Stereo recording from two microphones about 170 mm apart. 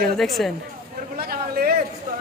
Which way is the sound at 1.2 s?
65° right (ahead or behind).